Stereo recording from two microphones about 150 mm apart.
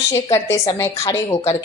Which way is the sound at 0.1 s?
20° left (ahead or behind).